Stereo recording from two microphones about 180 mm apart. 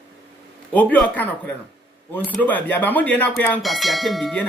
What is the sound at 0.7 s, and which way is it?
Speech, 10° left (ahead or behind).